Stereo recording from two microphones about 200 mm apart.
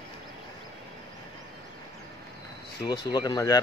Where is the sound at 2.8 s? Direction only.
20° left (ahead or behind).